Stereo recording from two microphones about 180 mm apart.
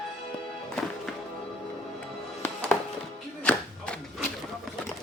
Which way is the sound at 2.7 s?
Centre (ahead or behind).